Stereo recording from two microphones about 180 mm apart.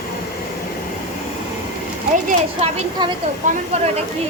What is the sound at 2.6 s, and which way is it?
A woman's voice, 35° right (ahead or behind).